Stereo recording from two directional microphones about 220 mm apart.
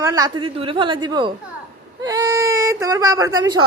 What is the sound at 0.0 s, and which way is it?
Speech, 15° right (ahead or behind).